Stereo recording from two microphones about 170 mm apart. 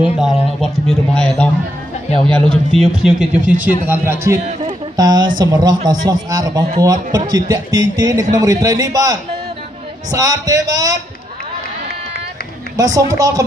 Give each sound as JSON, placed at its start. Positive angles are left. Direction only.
{"t": 0.0, "sound": "a sound", "side_deg": 0}
{"t": 2.5, "sound": "a man's voice", "side_deg": 5}
{"t": 3.3, "sound": "a man's voice", "side_deg": -50}
{"t": 3.8, "sound": "a man's voice", "side_deg": -10}
{"t": 12.7, "sound": "a man's voice", "side_deg": -20}